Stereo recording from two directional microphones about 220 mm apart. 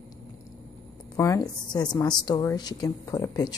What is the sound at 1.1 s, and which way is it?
A woman's voice, 15° left (ahead or behind).